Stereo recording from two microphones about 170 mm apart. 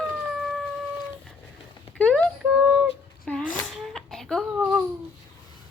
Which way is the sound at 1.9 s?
5° left (ahead or behind).